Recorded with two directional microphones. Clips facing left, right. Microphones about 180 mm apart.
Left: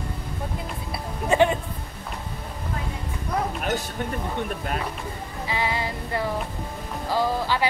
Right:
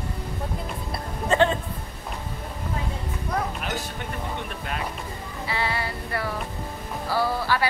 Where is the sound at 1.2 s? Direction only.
15° left (ahead or behind).